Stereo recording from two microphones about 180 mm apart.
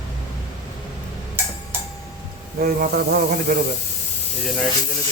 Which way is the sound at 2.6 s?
60° right (ahead or behind).